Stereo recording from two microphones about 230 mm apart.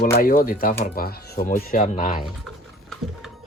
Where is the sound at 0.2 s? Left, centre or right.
Left.